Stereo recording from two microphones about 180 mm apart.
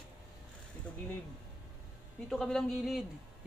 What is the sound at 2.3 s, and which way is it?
Speech, centre (ahead or behind).